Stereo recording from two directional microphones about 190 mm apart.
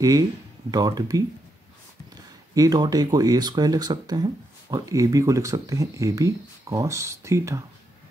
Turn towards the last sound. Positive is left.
turn(degrees=-15)  # may be behind; listen again after turning